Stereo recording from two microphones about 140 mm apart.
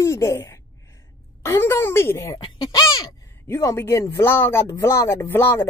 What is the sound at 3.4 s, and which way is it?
Speech, 20° left (ahead or behind).